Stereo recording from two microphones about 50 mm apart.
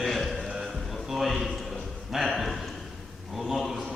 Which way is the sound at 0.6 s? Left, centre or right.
Centre.